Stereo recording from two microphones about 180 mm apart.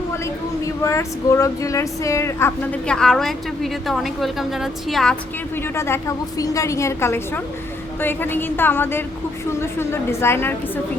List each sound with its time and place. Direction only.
0.9 s speech: 15° left (ahead or behind); by 5.1 s centre (ahead or behind)
5.6 s a woman's voice: 15° left (ahead or behind)